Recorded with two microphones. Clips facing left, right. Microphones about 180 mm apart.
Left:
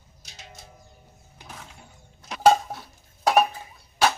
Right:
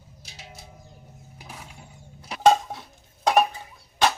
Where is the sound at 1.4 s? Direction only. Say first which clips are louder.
Even; 10° right (ahead or behind).